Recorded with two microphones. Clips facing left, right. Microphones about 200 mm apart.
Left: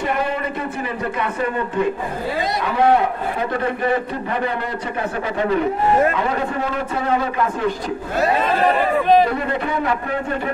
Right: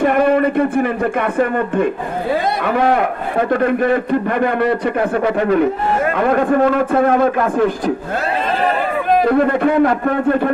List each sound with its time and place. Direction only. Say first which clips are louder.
0.0 s a man's voice: right 9 dB; 55° right (ahead or behind)
9.3 s a man's voice: right 9 dB; 55° right (ahead or behind)